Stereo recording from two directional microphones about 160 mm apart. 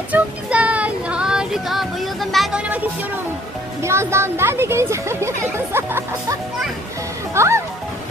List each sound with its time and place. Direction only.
0.1 s child singing: 10° right (ahead or behind)
3.8 s speech: 15° right (ahead or behind)
7.3 s speech: 15° right (ahead or behind)